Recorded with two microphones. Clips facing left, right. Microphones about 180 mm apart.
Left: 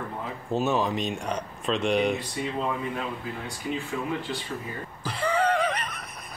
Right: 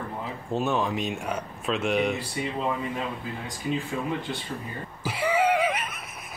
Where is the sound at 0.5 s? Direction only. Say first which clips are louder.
Left 1 dB; centre (ahead or behind).